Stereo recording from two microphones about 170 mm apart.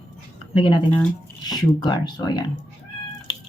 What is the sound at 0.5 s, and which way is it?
Speech, 30° left (ahead or behind).